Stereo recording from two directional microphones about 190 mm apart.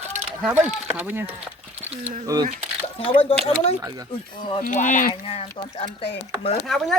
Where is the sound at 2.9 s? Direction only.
30° left (ahead or behind).